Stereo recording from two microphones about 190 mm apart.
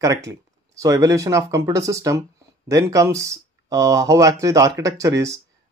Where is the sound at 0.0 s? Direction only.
15° right (ahead or behind).